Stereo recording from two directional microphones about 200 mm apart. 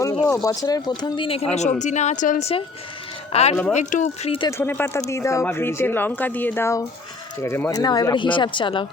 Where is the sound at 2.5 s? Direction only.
30° left (ahead or behind).